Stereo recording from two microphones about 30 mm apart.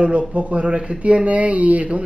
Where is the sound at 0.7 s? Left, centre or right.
Right.